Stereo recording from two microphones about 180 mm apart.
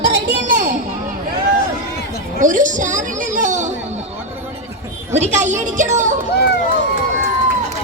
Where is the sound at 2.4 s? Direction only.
45° right (ahead or behind).